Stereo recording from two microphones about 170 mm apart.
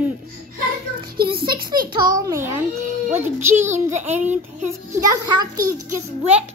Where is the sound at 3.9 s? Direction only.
45° right (ahead or behind).